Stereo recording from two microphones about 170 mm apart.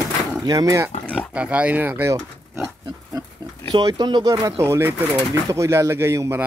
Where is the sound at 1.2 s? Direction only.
10° right (ahead or behind).